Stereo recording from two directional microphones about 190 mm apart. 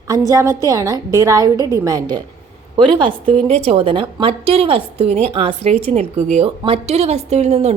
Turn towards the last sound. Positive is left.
turn(degrees=-35)  # may be behind; listen again after turning